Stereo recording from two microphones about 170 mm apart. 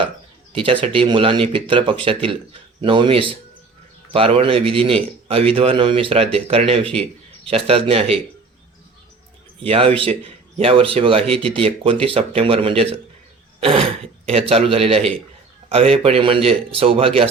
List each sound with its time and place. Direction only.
0.5 s speech: 30° right (ahead or behind)
9.6 s speech: 35° right (ahead or behind)